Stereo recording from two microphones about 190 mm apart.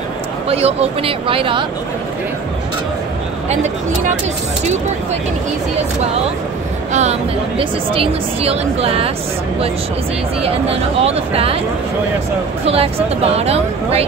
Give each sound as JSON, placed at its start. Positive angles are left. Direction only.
{"t": 0.5, "sound": "speech", "side_deg": -30}
{"t": 6.9, "sound": "speech", "side_deg": -35}
{"t": 10.4, "sound": "speech", "side_deg": -30}
{"t": 12.6, "sound": "speech", "side_deg": -30}